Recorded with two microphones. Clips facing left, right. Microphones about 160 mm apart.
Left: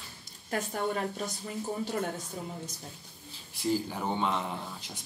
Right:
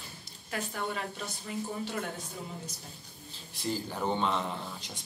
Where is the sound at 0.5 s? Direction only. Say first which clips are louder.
Left 4 dB; 45° left (ahead or behind).